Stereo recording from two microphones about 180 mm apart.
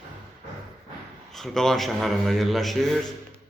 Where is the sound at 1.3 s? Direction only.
Centre (ahead or behind).